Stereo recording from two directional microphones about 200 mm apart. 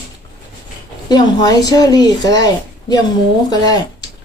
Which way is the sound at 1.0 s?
20° left (ahead or behind).